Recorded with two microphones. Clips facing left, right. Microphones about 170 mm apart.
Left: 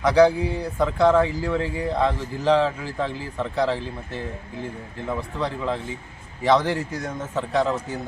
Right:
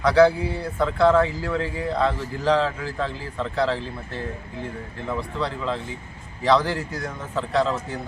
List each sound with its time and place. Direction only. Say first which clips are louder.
0.0 s speech: even; 15° left (ahead or behind)